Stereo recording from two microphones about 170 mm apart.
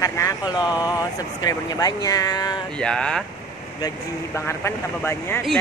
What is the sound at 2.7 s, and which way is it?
Speech, 5° left (ahead or behind).